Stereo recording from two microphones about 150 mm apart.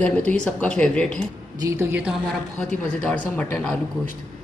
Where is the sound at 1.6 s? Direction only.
20° right (ahead or behind).